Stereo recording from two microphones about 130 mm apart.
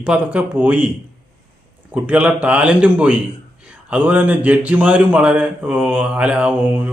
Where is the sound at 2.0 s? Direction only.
10° right (ahead or behind).